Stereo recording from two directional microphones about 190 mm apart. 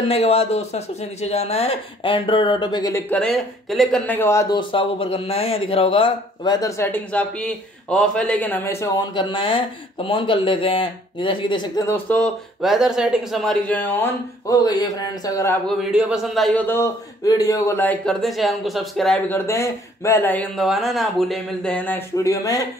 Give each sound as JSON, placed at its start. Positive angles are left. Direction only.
{"t": 0.1, "sound": "speech", "side_deg": 30}
{"t": 3.1, "sound": "speech", "side_deg": 5}
{"t": 15.8, "sound": "speech", "side_deg": -5}